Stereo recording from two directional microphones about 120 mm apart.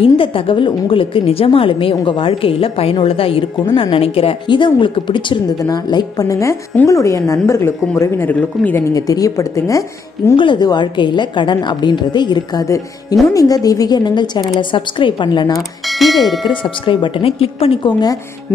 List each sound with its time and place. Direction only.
0.0 s a woman's voice: 50° left (ahead or behind); by 8.8 s 15° left (ahead or behind)
8.9 s a woman's voice: 30° left (ahead or behind)
10.3 s a woman's voice: 40° left (ahead or behind)
15.9 s speech: centre (ahead or behind)
16.4 s a woman's voice: 45° left (ahead or behind)